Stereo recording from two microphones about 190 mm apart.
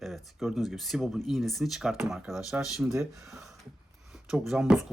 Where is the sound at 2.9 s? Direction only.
15° right (ahead or behind).